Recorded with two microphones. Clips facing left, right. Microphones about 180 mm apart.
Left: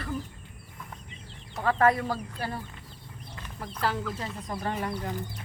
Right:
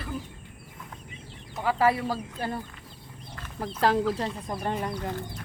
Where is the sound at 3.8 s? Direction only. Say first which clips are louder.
Right 7 dB; 35° right (ahead or behind).